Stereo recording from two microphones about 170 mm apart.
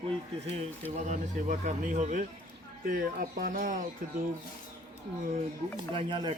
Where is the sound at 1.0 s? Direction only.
45° right (ahead or behind).